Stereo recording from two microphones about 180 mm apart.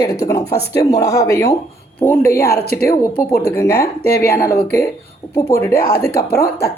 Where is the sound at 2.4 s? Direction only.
60° left (ahead or behind).